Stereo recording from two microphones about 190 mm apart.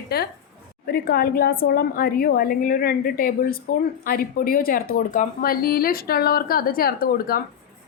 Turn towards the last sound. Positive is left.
turn(degrees=50)  # may be behind; listen again after turning